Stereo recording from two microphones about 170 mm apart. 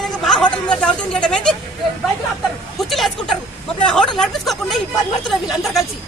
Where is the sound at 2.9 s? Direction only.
Centre (ahead or behind).